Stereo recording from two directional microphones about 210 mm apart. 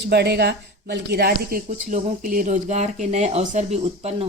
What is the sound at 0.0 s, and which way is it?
A woman's voice, 50° right (ahead or behind).